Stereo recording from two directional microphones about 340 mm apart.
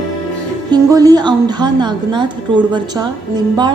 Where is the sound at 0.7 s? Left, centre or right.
Centre.